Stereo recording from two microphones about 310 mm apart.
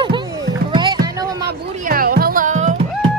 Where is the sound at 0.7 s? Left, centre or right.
Centre.